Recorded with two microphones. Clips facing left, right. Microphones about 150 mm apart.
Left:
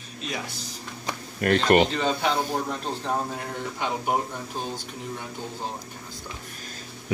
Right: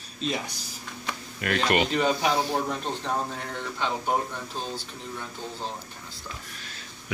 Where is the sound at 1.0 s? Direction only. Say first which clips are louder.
Left 6 dB; 35° left (ahead or behind).